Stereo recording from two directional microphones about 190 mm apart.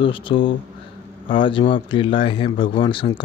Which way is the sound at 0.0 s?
25° left (ahead or behind).